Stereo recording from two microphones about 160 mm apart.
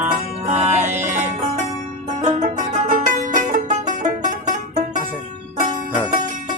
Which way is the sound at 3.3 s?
50° right (ahead or behind).